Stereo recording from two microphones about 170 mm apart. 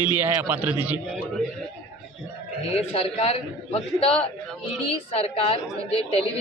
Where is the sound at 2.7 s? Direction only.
35° left (ahead or behind).